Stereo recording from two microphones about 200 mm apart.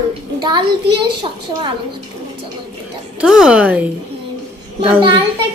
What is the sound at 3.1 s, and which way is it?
Speech, 5° right (ahead or behind).